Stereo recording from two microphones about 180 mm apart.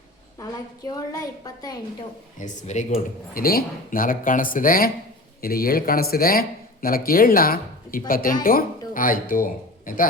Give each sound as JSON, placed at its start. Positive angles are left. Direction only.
{"t": 2.4, "sound": "speech", "side_deg": 45}
{"t": 3.3, "sound": "speech", "side_deg": 55}